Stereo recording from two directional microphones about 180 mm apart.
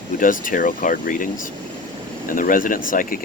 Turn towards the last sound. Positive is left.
turn(degrees=50)  # may be behind; listen again after turning